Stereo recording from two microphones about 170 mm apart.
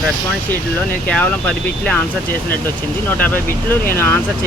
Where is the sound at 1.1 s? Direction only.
10° left (ahead or behind).